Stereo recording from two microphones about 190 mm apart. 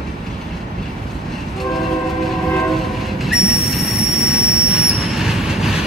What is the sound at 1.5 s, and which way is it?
Train, centre (ahead or behind).